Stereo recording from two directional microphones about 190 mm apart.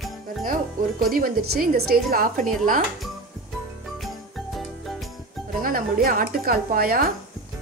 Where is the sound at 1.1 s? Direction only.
50° right (ahead or behind).